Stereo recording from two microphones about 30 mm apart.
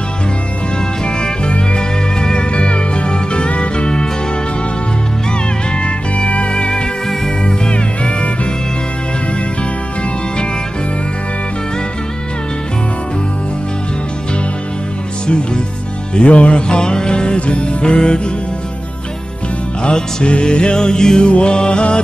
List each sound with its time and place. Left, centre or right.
1.0 s music: left
1.8 s music: left
2.5 s music: left
5.8 s music: left
15.2 s music: left
16.2 s music: left
16.6 s music: left
19.8 s music: left
21.3 s music: left